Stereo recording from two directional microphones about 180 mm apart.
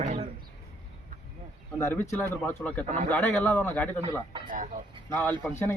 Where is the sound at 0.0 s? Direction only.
40° right (ahead or behind).